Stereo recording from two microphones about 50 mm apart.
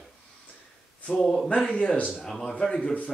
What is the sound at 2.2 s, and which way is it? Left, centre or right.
Speech, centre.